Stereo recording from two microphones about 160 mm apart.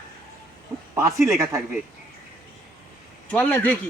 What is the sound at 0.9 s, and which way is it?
Speech, 20° right (ahead or behind).